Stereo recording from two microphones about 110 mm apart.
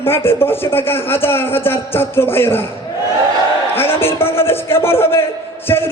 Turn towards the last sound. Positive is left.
turn(degrees=20)  # may be behind; listen again after turning